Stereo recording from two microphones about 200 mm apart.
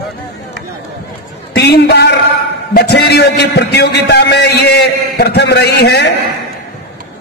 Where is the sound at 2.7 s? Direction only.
55° left (ahead or behind).